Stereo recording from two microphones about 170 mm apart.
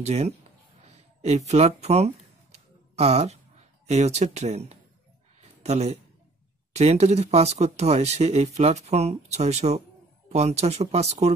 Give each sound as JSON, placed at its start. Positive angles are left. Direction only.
{"t": 0.0, "sound": "speech", "side_deg": -40}
{"t": 1.8, "sound": "a sound", "side_deg": -40}
{"t": 6.7, "sound": "speech", "side_deg": -40}